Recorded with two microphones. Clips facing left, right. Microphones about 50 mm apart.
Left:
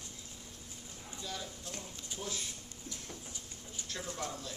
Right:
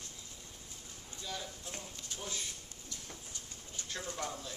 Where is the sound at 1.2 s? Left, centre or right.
Centre.